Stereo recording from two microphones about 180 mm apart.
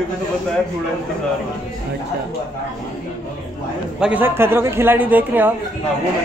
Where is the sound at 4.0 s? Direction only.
5° right (ahead or behind).